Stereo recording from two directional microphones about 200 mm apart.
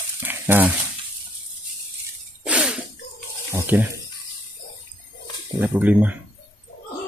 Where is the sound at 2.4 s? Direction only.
5° right (ahead or behind).